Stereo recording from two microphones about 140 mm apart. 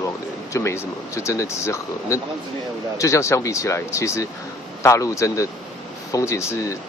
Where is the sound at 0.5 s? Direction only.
20° left (ahead or behind).